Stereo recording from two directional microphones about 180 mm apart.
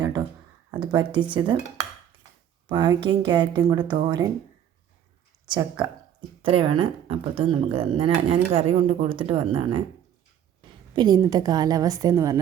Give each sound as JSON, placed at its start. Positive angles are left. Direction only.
{"t": 0.0, "sound": "a sound", "side_deg": -20}
{"t": 0.7, "sound": "a woman's voice", "side_deg": -25}
{"t": 2.6, "sound": "a woman's voice", "side_deg": -25}
{"t": 5.5, "sound": "a woman's voice", "side_deg": -25}
{"t": 10.9, "sound": "a woman's voice", "side_deg": -25}